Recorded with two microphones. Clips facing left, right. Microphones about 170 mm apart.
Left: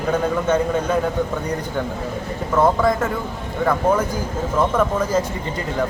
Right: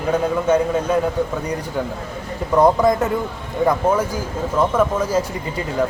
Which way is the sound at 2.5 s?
20° right (ahead or behind).